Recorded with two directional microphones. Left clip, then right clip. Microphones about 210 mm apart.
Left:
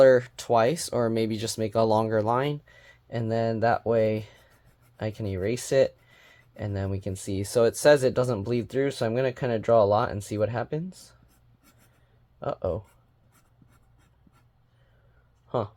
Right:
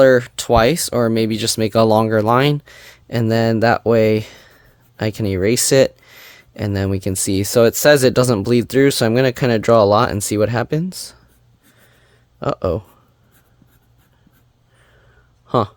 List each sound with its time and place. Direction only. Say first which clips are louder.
0.0 s speech: right 6 dB; 40° right (ahead or behind); by 11.2 s 55° right (ahead or behind)
12.4 s speech: right 10 dB; 55° right (ahead or behind)
15.4 s speech: right 12 dB; 60° right (ahead or behind)